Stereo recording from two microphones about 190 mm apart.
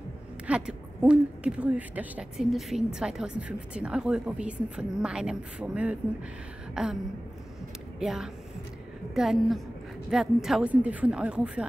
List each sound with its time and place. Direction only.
0.5 s a woman's voice: 5° right (ahead or behind)
6.7 s a sound: 5° right (ahead or behind)
8.0 s a woman's voice: centre (ahead or behind)